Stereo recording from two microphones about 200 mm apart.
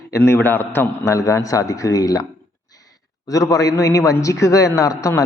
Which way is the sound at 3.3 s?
15° left (ahead or behind).